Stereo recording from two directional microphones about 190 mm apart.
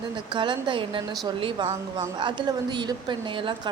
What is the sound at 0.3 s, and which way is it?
A woman's voice, 25° right (ahead or behind).